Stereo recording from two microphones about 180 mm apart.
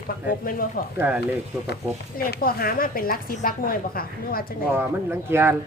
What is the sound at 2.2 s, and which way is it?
A woman's voice, 55° left (ahead or behind).